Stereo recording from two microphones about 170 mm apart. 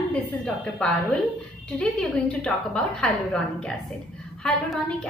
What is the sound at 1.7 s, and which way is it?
A woman's voice, 5° left (ahead or behind).